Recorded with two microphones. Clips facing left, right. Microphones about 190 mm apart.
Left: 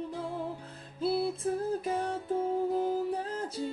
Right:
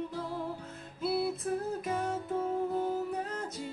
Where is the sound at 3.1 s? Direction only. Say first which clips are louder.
Left 2 dB; 30° left (ahead or behind).